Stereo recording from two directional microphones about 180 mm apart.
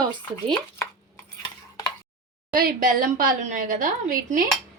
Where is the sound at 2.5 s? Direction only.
50° right (ahead or behind).